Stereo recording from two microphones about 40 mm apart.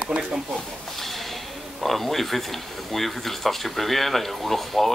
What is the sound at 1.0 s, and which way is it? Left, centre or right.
Speech, centre.